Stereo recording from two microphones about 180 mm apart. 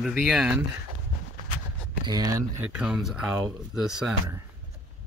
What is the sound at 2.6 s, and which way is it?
Speech, 5° right (ahead or behind).